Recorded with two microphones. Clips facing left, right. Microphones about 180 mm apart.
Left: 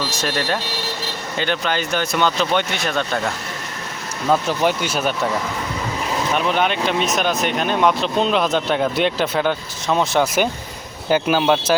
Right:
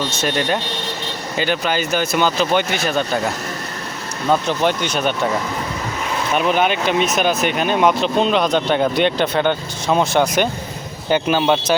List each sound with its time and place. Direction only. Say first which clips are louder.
0.2 s speech: right 3 dB; centre (ahead or behind)
4.3 s speech: right 1 dB; 5° left (ahead or behind)
6.3 s speech: right 3 dB; 5° right (ahead or behind)